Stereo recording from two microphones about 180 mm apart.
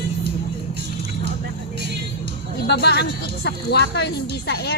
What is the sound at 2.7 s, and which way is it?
Speech, 65° left (ahead or behind).